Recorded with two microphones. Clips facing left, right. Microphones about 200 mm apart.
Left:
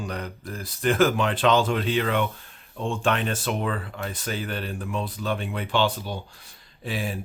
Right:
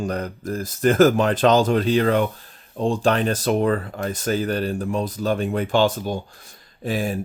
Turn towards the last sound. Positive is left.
turn(degrees=-45)  # may be behind; listen again after turning